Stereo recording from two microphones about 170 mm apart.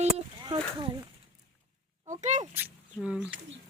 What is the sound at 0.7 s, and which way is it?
Speech, 25° right (ahead or behind).